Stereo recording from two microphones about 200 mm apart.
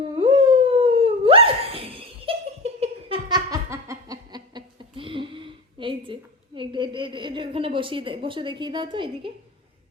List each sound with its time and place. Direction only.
0.2 s dog: 25° right (ahead or behind)
2.8 s laughter: 25° right (ahead or behind)